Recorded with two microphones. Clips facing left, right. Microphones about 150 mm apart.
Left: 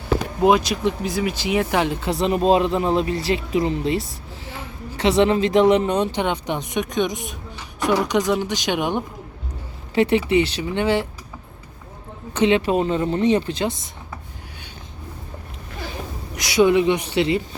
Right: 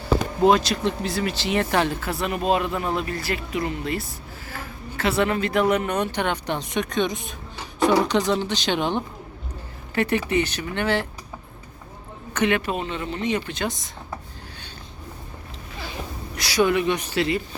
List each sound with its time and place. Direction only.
0.4 s speech: 10° left (ahead or behind)
2.1 s speech: 30° left (ahead or behind)
12.4 s speech: 25° left (ahead or behind)
16.3 s speech: 20° left (ahead or behind)